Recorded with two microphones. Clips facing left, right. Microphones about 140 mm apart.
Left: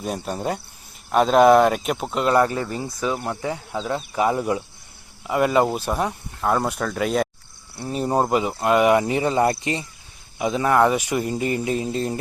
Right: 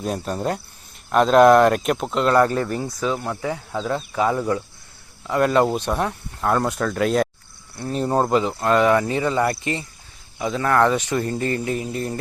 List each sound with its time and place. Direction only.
0.0 s speech: centre (ahead or behind); by 12.2 s 25° left (ahead or behind)